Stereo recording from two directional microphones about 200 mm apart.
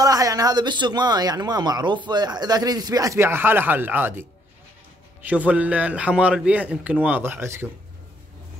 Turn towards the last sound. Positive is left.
turn(degrees=-10)  # may be behind; listen again after turning